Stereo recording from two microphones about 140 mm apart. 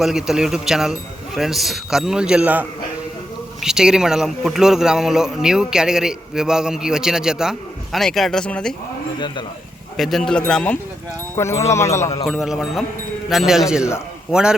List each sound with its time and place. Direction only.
0.0 s speech: 5° right (ahead or behind)
10.0 s speech: centre (ahead or behind)
11.3 s a man's voice: 20° left (ahead or behind)
12.2 s speech: centre (ahead or behind)